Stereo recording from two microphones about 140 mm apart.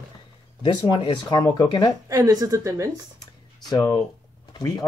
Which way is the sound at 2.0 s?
25° right (ahead or behind).